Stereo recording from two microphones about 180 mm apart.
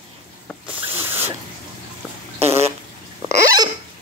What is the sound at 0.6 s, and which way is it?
Hiss, 10° right (ahead or behind).